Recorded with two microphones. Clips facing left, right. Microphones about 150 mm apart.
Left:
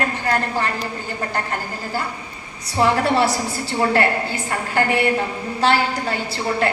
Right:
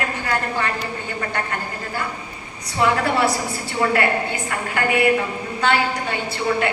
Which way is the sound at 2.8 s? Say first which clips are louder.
Left 2 dB; 30° left (ahead or behind).